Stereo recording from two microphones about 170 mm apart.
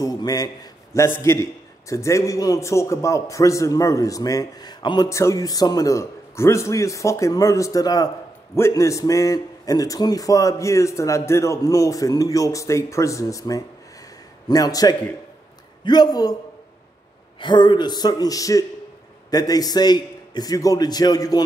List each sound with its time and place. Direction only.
0.0 s a man's voice: 20° left (ahead or behind)
17.4 s a man's voice: 25° left (ahead or behind)